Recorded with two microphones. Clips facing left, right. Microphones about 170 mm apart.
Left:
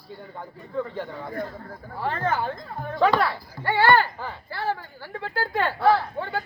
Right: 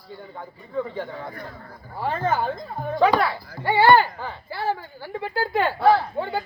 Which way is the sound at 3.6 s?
15° right (ahead or behind).